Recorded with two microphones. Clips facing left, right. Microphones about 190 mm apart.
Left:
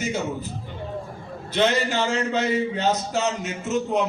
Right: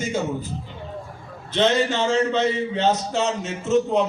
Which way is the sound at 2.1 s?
30° right (ahead or behind).